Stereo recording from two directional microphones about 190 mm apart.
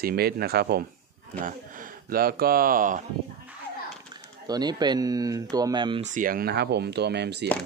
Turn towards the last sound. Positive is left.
turn(degrees=-60)  # may be behind; listen again after turning